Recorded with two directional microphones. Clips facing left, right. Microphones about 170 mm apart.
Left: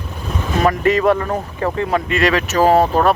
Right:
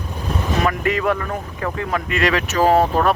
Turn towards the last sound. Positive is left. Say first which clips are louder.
# left 2 dB
turn(degrees=35)  # may be behind; listen again after turning